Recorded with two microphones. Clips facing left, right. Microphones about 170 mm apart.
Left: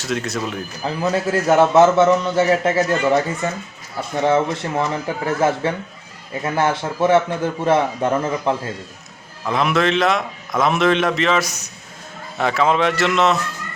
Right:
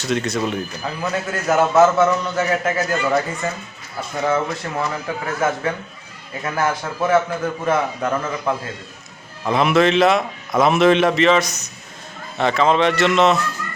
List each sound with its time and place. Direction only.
0.0 s a man's voice: centre (ahead or behind)
1.1 s a man's voice: 30° left (ahead or behind)
9.5 s a man's voice: centre (ahead or behind)